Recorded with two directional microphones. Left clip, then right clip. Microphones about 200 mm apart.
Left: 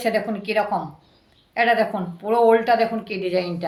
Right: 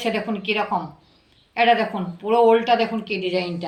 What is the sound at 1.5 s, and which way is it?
A woman's voice, 20° left (ahead or behind).